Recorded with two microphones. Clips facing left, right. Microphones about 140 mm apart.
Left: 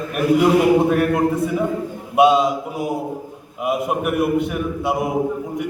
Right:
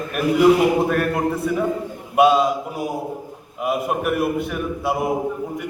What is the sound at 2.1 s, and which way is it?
Speech, 20° left (ahead or behind).